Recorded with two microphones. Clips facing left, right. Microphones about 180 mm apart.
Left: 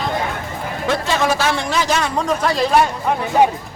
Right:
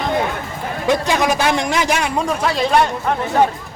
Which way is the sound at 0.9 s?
15° right (ahead or behind).